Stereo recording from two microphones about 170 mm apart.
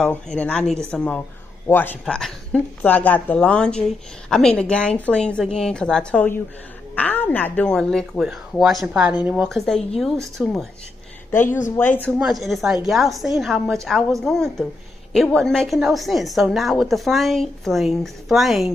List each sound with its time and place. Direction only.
0.0 s speech: 5° left (ahead or behind)
11.4 s speech: 50° left (ahead or behind)
11.7 s speech: 10° left (ahead or behind)
12.2 s speech: centre (ahead or behind)